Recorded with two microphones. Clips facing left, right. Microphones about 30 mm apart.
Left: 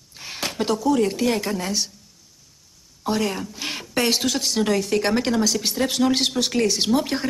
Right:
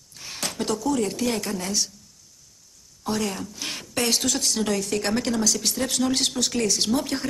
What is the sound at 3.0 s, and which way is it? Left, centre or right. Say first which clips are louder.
A woman's voice: left 3 dB; centre.